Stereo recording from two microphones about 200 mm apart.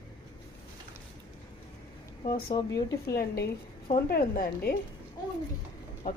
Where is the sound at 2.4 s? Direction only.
20° left (ahead or behind).